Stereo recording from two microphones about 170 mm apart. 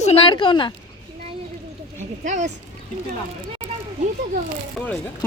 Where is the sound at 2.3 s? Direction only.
45° right (ahead or behind).